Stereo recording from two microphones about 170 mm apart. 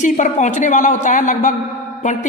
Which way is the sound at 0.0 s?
45° left (ahead or behind).